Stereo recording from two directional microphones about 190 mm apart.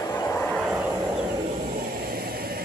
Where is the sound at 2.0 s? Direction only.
50° right (ahead or behind).